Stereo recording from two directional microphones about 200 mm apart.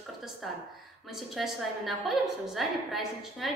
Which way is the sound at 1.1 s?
Centre (ahead or behind).